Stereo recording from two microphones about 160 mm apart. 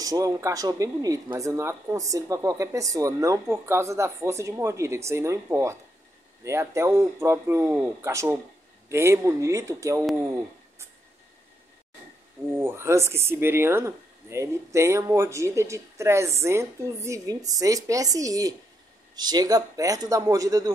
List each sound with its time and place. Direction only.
0.0 s speech: 20° right (ahead or behind)
12.5 s speech: 15° right (ahead or behind)